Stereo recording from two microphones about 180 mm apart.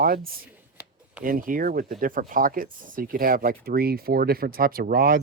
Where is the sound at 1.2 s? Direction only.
50° right (ahead or behind).